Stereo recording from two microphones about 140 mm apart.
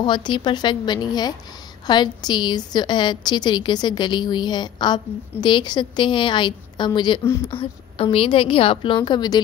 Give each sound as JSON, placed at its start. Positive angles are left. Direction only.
{"t": 0.0, "sound": "a woman's voice", "side_deg": 35}